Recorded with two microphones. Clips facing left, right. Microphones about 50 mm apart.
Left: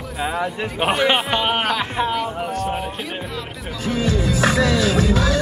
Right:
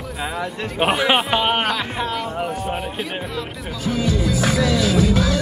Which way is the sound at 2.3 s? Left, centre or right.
Centre.